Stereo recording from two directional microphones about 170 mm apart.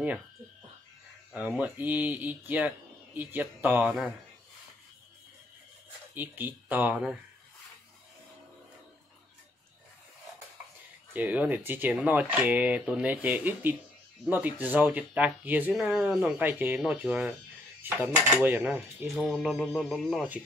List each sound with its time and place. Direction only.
1.3 s speech: 10° right (ahead or behind)
6.1 s speech: 10° right (ahead or behind)
11.1 s speech: 10° right (ahead or behind)
17.8 s dishes: 10° right (ahead or behind)